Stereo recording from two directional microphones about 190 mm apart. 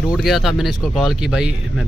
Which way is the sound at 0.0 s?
Centre (ahead or behind).